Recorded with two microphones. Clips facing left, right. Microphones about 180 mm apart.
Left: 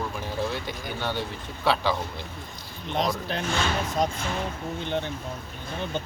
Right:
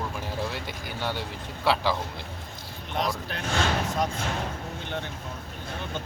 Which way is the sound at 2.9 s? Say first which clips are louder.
Left 3 dB; 20° left (ahead or behind).